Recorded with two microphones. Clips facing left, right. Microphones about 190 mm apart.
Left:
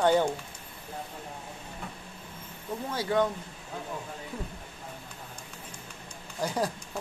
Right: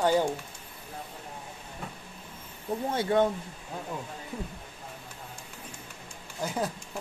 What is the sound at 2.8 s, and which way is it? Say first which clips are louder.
Speech: right 2 dB; 25° right (ahead or behind).